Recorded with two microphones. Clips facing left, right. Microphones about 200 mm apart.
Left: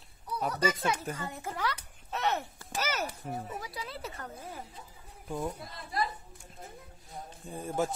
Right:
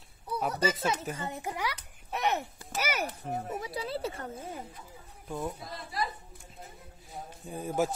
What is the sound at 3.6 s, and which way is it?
Speech, 30° right (ahead or behind).